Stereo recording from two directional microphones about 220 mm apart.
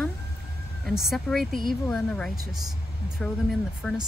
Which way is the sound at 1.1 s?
Centre (ahead or behind).